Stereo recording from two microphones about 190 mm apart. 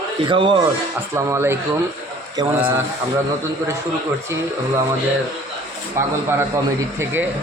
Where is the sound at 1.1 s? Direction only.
15° right (ahead or behind).